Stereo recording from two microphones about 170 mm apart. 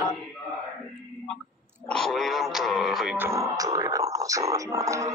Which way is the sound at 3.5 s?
20° right (ahead or behind).